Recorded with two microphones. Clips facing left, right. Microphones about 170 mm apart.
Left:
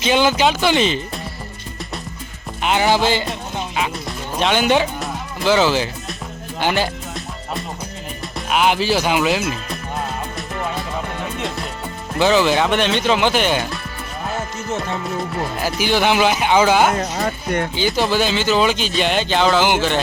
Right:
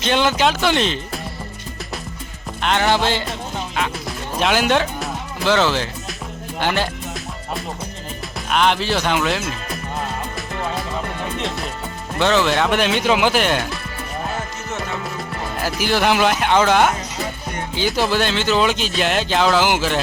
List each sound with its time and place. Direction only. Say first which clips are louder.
0.0 s speech: left 2 dB; 5° left (ahead or behind)
2.6 s music: left 1 dB; 5° left (ahead or behind)
4.4 s speech: left 1 dB; centre (ahead or behind)
8.4 s speech: left 1 dB; 5° left (ahead or behind)
12.2 s speech: left 2 dB; 5° left (ahead or behind)
15.6 s speech: even; centre (ahead or behind)
17.2 s speech: left 7 dB; 75° left (ahead or behind)
17.7 s speech: right 2 dB; centre (ahead or behind)